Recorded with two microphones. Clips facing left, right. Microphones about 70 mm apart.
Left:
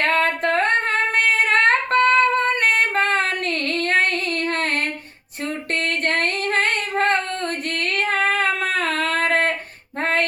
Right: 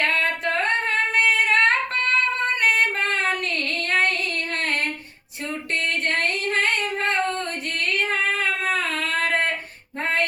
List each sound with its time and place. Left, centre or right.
0.0 s singing: left
4.4 s child singing: left
6.1 s child singing: left
10.0 s a sound: left